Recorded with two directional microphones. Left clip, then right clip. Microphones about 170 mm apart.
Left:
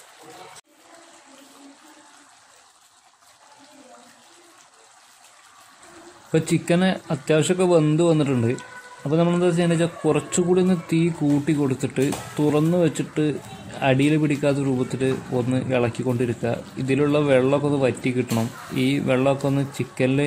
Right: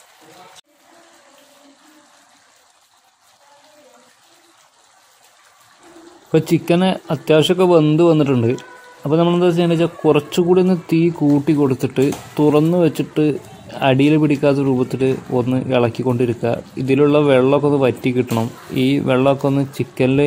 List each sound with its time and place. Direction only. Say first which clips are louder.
6.3 s a man's voice: right 6 dB; 25° right (ahead or behind)